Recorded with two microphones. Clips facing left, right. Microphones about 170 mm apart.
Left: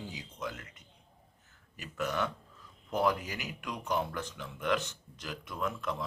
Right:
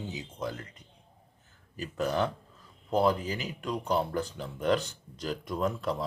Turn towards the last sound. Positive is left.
turn(degrees=-35)  # may be behind; listen again after turning